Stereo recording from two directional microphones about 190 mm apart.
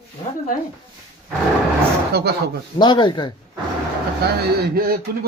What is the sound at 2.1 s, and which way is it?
Speech, 60° right (ahead or behind).